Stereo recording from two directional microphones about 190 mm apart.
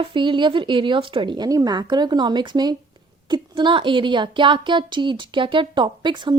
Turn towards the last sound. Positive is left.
turn(degrees=-25)  # may be behind; listen again after turning